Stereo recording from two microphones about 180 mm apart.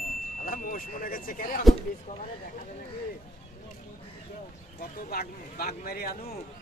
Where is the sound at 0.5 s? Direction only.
50° left (ahead or behind).